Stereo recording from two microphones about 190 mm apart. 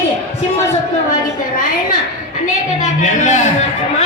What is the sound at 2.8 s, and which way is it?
Speech, 40° left (ahead or behind).